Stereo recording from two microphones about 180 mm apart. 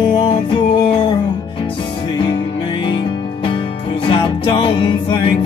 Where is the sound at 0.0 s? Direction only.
25° left (ahead or behind).